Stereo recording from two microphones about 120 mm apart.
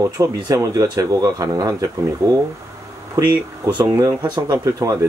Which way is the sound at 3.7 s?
35° right (ahead or behind).